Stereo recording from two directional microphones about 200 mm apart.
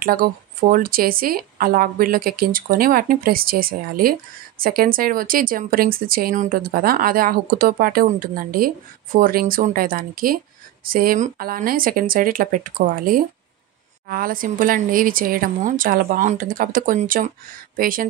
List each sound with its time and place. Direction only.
0.0 s speech: 45° right (ahead or behind)